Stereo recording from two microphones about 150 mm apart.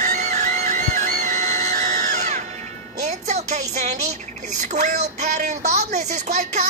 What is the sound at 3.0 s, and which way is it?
Music, 50° right (ahead or behind).